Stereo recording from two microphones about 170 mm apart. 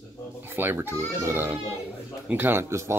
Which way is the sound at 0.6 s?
15° right (ahead or behind).